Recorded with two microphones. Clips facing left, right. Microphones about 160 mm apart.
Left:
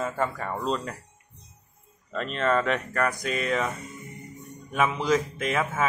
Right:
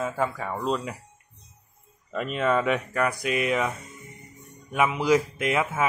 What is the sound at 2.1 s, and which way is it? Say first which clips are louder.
Speech: right 1 dB; 10° right (ahead or behind).